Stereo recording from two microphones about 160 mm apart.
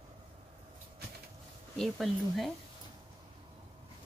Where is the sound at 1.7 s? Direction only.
Centre (ahead or behind).